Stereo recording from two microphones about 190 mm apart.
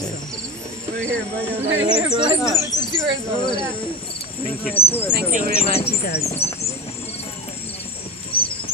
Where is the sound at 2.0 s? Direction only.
25° right (ahead or behind).